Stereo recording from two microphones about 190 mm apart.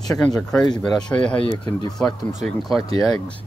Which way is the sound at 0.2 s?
5° left (ahead or behind).